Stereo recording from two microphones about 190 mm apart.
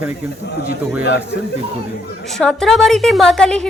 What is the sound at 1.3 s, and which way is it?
Speech, 60° left (ahead or behind).